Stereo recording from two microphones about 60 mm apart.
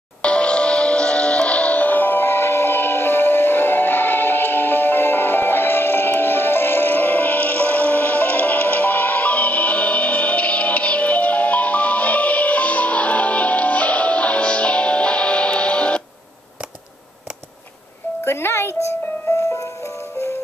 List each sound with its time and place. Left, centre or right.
0.2 s music: centre
18.2 s music: left